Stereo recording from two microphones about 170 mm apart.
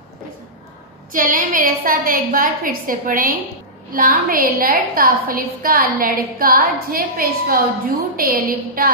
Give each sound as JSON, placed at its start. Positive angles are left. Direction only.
{"t": 1.1, "sound": "a woman's voice", "side_deg": -50}